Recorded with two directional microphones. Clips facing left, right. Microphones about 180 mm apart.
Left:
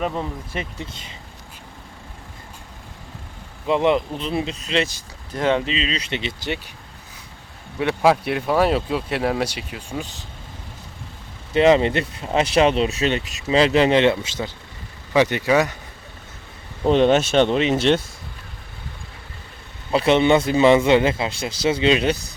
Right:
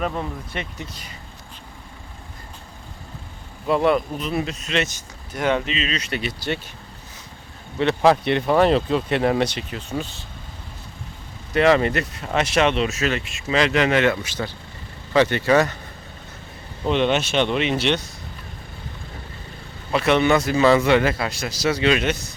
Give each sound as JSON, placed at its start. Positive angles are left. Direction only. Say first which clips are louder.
{"t": 0.0, "sound": "speech", "louder": "left 1 dB", "side_deg": 5}
{"t": 0.8, "sound": "speech", "louder": "left 1 dB", "side_deg": 25}
{"t": 3.7, "sound": "speech", "louder": "even", "side_deg": 20}
{"t": 7.8, "sound": "speech", "louder": "right 1 dB", "side_deg": 5}
{"t": 11.5, "sound": "speech", "louder": "left 2 dB", "side_deg": 25}
{"t": 16.8, "sound": "speech", "louder": "left 4 dB", "side_deg": 40}
{"t": 19.9, "sound": "speech", "louder": "left 2 dB", "side_deg": 30}